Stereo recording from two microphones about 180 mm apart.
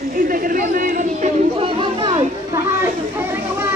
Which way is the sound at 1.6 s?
30° right (ahead or behind).